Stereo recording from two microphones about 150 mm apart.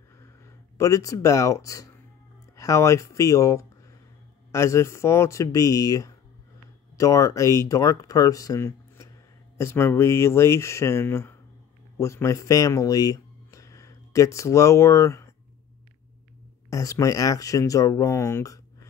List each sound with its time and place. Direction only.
0.7 s speech: 20° left (ahead or behind)
16.7 s speech: 20° left (ahead or behind)